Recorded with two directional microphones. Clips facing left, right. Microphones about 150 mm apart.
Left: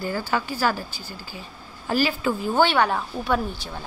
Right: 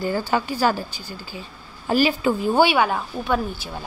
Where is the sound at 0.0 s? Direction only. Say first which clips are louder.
Right 3 dB; 20° right (ahead or behind).